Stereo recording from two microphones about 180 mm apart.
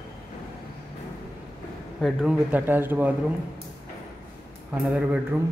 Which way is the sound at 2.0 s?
5° right (ahead or behind).